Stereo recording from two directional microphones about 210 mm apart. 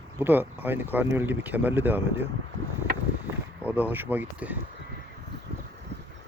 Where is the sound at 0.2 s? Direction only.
10° right (ahead or behind).